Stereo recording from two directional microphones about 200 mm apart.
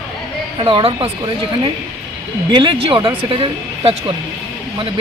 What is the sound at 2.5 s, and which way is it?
Speech, 25° right (ahead or behind).